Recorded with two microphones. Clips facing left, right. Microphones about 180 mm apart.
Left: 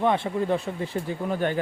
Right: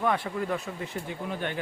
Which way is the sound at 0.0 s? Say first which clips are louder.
Left 4 dB; 25° left (ahead or behind).